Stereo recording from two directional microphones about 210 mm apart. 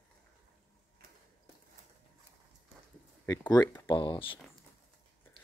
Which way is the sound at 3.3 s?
15° left (ahead or behind).